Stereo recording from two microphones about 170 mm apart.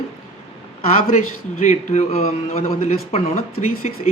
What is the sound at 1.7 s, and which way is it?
Speech, 40° left (ahead or behind).